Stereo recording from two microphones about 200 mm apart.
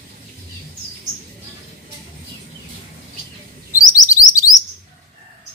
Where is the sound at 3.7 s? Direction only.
15° left (ahead or behind).